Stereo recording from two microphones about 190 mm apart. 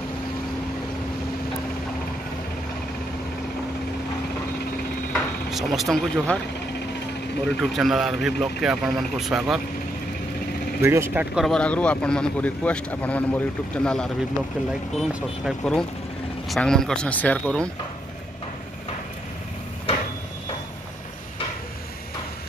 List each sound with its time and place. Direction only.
5.1 s speech: centre (ahead or behind)
7.4 s speech: 5° left (ahead or behind)
10.8 s speech: 10° right (ahead or behind); by 17.6 s 5° left (ahead or behind)